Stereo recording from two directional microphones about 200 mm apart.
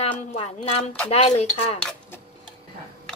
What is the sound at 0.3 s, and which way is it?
A woman's voice, 30° left (ahead or behind).